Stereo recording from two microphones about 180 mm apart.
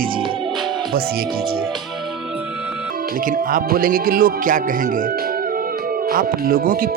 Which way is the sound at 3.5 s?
50° right (ahead or behind).